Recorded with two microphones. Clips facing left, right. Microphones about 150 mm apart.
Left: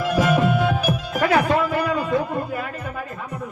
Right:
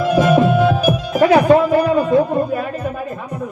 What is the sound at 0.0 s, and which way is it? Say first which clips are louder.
Music: right 6 dB; 40° right (ahead or behind).